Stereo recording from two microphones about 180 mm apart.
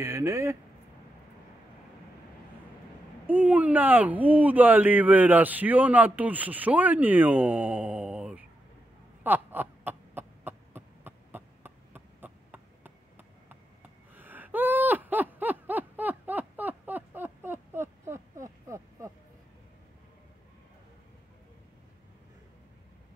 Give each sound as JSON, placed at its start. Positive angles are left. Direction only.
{"t": 0.0, "sound": "speech", "side_deg": -15}
{"t": 3.3, "sound": "speech", "side_deg": -10}
{"t": 9.2, "sound": "a sound", "side_deg": -10}
{"t": 14.1, "sound": "gasp", "side_deg": -10}